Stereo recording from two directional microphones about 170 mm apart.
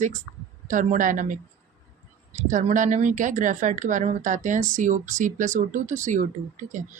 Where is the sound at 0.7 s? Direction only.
50° right (ahead or behind).